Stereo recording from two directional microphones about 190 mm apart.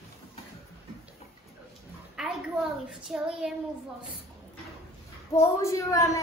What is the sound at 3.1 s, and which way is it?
Speech, 5° right (ahead or behind).